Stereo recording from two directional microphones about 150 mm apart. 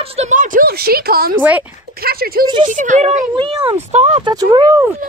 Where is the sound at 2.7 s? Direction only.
55° right (ahead or behind).